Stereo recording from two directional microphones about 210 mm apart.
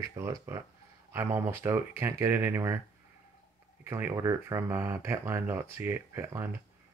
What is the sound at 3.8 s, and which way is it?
Speech, 10° right (ahead or behind).